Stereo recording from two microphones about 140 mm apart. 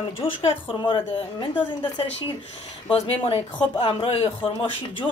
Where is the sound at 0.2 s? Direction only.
40° left (ahead or behind).